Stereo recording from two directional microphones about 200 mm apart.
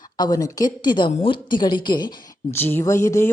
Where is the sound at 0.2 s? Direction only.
20° left (ahead or behind).